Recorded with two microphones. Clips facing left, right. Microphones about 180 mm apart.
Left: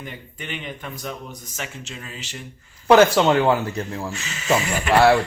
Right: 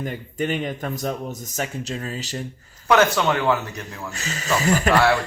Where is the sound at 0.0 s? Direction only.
45° right (ahead or behind).